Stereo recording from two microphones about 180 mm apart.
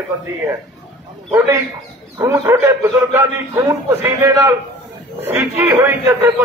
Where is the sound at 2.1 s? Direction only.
15° right (ahead or behind).